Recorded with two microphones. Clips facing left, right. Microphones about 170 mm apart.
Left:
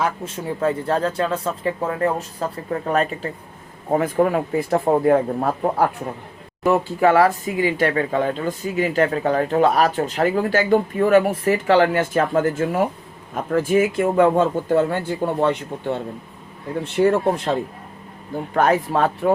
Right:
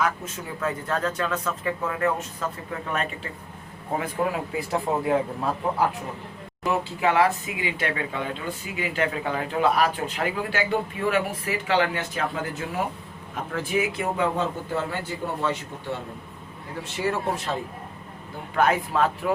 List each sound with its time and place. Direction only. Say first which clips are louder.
0.0 s speech: left 3 dB; 30° left (ahead or behind); by 17.6 s 55° left (ahead or behind)
18.5 s speech: left 4 dB; 40° left (ahead or behind)